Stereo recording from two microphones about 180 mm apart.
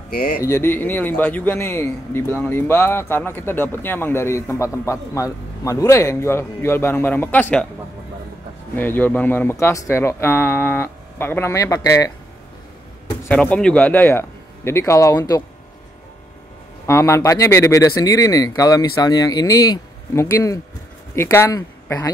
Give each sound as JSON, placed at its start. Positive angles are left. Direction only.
{"t": 0.1, "sound": "speech", "side_deg": 50}
{"t": 0.4, "sound": "a man's voice", "side_deg": 15}
{"t": 8.7, "sound": "a man's voice", "side_deg": 10}
{"t": 13.2, "sound": "a man's voice", "side_deg": 10}
{"t": 16.8, "sound": "speech", "side_deg": 15}